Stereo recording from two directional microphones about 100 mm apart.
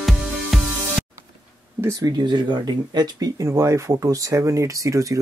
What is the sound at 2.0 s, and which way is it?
Speech, 50° right (ahead or behind).